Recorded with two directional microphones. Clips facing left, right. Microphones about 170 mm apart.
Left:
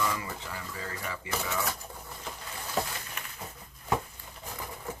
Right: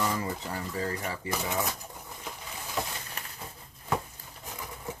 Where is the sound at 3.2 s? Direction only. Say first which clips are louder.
Even; 35° right (ahead or behind).